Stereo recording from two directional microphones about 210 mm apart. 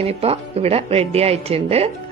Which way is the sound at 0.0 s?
30° right (ahead or behind).